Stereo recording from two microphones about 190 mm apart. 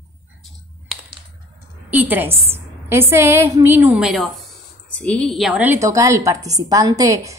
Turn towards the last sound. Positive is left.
turn(degrees=-15)  # may be behind; listen again after turning